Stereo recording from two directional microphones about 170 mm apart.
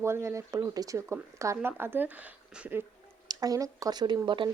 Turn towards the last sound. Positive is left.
turn(degrees=-30)  # may be behind; listen again after turning